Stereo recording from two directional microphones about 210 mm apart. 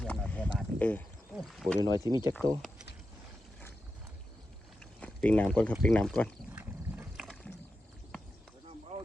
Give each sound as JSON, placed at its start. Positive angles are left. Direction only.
{"t": 0.0, "sound": "speech", "side_deg": 5}
{"t": 2.0, "sound": "speech", "side_deg": -15}
{"t": 4.8, "sound": "speech", "side_deg": 5}
{"t": 6.5, "sound": "boat", "side_deg": -10}